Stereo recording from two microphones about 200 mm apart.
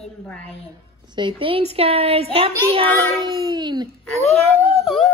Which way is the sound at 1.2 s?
25° right (ahead or behind).